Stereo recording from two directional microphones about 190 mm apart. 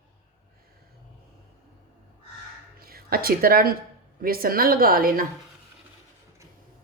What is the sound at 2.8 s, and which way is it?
A woman's voice, 50° right (ahead or behind).